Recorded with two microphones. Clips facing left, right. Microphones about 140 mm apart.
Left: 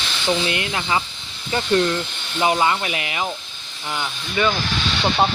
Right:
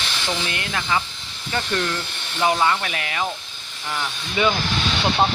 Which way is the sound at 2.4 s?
10° left (ahead or behind).